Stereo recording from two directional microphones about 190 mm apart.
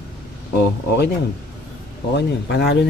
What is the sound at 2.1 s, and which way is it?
Speech, 60° left (ahead or behind).